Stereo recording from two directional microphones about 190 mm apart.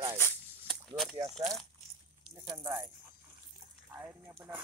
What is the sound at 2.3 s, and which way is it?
Speech, 20° right (ahead or behind).